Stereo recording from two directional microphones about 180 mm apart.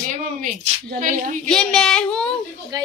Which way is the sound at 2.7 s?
20° right (ahead or behind).